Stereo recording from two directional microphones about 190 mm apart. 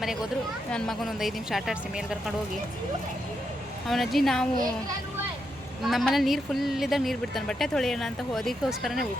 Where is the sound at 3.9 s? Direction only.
Centre (ahead or behind).